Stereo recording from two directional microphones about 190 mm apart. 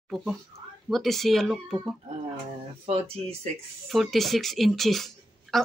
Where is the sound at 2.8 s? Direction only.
35° right (ahead or behind).